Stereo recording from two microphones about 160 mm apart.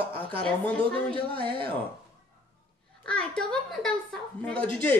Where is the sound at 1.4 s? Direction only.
30° right (ahead or behind).